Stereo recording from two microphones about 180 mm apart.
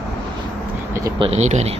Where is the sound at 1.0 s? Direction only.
30° right (ahead or behind).